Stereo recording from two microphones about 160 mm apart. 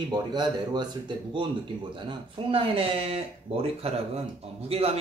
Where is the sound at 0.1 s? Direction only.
25° right (ahead or behind).